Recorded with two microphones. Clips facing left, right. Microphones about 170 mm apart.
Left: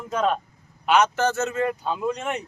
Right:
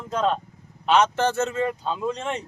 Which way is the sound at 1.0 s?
30° right (ahead or behind).